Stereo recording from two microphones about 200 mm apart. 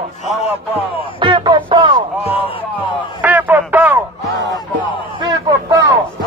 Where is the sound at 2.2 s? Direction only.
30° left (ahead or behind).